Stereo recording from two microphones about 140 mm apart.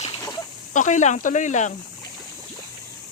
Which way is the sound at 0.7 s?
60° left (ahead or behind).